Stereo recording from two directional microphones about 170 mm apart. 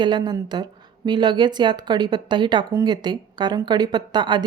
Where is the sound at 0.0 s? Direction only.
25° right (ahead or behind).